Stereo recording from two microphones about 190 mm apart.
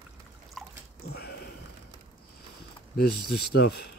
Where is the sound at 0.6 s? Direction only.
Centre (ahead or behind).